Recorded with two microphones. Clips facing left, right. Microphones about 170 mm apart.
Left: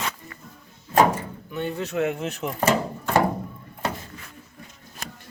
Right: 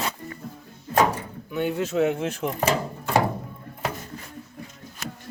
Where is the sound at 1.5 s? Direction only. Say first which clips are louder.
Right 3 dB; 5° right (ahead or behind).